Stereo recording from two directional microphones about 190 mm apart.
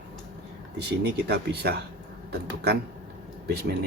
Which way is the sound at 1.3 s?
60° right (ahead or behind).